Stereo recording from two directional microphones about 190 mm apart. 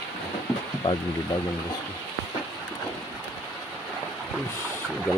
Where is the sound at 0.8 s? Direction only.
35° left (ahead or behind).